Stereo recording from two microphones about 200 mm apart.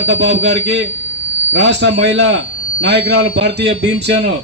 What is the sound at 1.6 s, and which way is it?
A man's voice, 60° right (ahead or behind).